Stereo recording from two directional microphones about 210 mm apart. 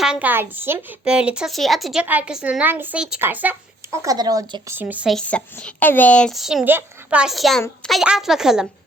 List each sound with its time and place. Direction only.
0.0 s speech: 5° right (ahead or behind)